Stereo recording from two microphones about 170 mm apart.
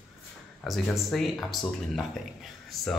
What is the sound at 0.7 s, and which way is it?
Speech, centre (ahead or behind).